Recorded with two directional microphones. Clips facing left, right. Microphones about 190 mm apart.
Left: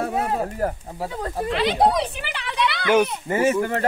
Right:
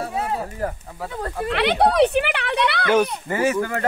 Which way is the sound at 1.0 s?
15° left (ahead or behind).